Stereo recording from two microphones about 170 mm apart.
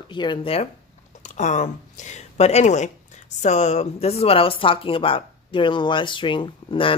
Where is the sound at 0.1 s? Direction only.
25° left (ahead or behind).